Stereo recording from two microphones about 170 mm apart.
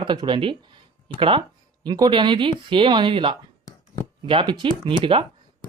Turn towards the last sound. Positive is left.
turn(degrees=-30)  # may be behind; listen again after turning